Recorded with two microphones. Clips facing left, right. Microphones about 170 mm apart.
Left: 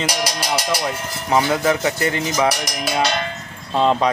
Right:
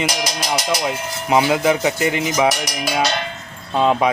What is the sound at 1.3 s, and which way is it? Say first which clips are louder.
Speech: right 2 dB; 15° right (ahead or behind).